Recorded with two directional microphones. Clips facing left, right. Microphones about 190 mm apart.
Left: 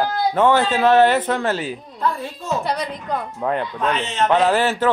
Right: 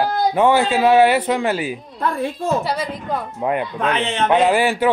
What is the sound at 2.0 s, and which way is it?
Speech, 55° right (ahead or behind).